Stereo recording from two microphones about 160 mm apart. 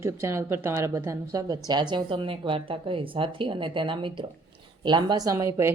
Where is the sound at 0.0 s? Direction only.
15° right (ahead or behind).